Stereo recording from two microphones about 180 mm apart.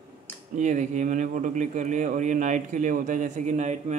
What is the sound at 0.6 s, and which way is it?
Speech, 40° right (ahead or behind).